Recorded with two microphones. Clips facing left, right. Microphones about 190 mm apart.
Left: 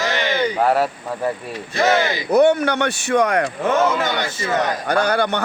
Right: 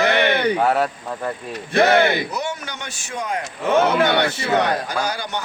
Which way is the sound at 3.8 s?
65° right (ahead or behind).